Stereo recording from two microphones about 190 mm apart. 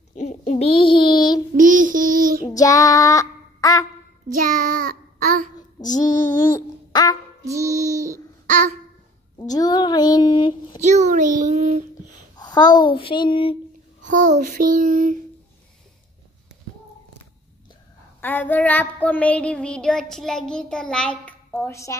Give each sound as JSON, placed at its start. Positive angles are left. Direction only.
{"t": 0.1, "sound": "child singing", "side_deg": 40}
{"t": 1.6, "sound": "child singing", "side_deg": -45}
{"t": 2.4, "sound": "child singing", "side_deg": 20}
{"t": 4.4, "sound": "child singing", "side_deg": -45}
{"t": 5.8, "sound": "a sound", "side_deg": 20}
{"t": 8.5, "sound": "babbling", "side_deg": -40}
{"t": 9.4, "sound": "a sound", "side_deg": 20}
{"t": 10.8, "sound": "a child's voice", "side_deg": -40}
{"t": 12.4, "sound": "a child's voice", "side_deg": 20}
{"t": 14.0, "sound": "child singing", "side_deg": -40}
{"t": 18.2, "sound": "child singing", "side_deg": 10}